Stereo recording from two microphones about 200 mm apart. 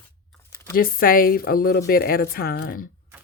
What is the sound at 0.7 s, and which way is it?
Speech, 45° left (ahead or behind).